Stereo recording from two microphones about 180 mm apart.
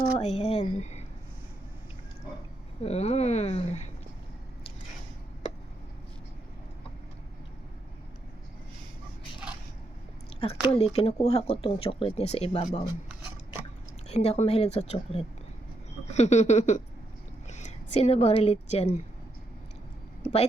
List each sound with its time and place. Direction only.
0.3 s speech: 35° left (ahead or behind)
2.8 s speech: 35° left (ahead or behind)
10.4 s speech: 30° left (ahead or behind)
12.6 s speech: 25° left (ahead or behind)
14.1 s speech: 35° left (ahead or behind)
17.5 s a sound: 40° left (ahead or behind)
18.0 s speech: 35° left (ahead or behind)